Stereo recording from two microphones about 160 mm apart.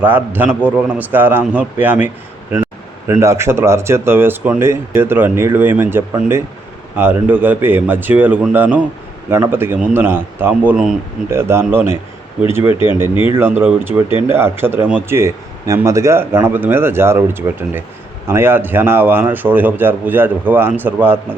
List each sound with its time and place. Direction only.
0.0 s a man's voice: 10° right (ahead or behind)
3.1 s a man's voice: 15° right (ahead or behind)